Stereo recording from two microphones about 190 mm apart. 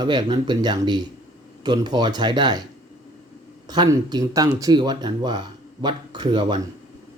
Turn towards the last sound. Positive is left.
turn(degrees=-25)  # may be behind; listen again after turning